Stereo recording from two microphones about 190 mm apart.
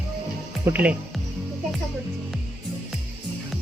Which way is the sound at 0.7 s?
10° right (ahead or behind).